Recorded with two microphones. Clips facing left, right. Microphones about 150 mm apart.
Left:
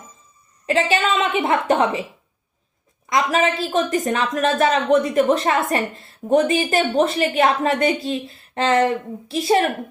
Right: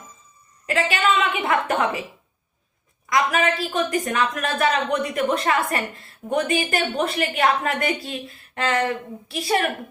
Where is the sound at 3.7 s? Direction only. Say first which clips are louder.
Left 3 dB; 35° left (ahead or behind).